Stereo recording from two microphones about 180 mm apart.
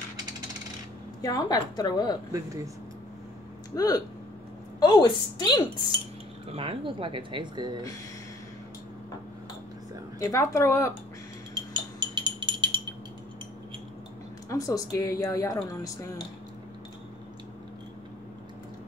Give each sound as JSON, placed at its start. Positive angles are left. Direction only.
{"t": 1.2, "sound": "a woman's voice", "side_deg": 20}
{"t": 2.3, "sound": "speech", "side_deg": -20}
{"t": 3.7, "sound": "a woman's voice", "side_deg": 20}
{"t": 6.5, "sound": "speech", "side_deg": -30}
{"t": 10.1, "sound": "a woman's voice", "side_deg": 15}
{"t": 11.5, "sound": "a sound", "side_deg": -25}
{"t": 14.5, "sound": "a woman's voice", "side_deg": 20}